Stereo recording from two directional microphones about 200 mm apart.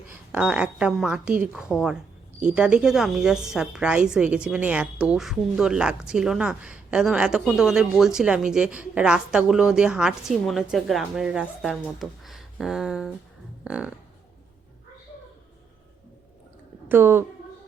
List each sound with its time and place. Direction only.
0.1 s a woman's voice: 5° right (ahead or behind)
16.9 s a woman's voice: 10° right (ahead or behind)